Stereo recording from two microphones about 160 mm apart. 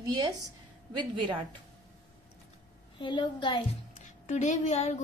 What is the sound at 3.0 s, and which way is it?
Speech, 30° left (ahead or behind).